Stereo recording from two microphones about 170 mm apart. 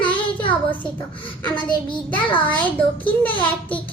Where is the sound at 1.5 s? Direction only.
30° left (ahead or behind).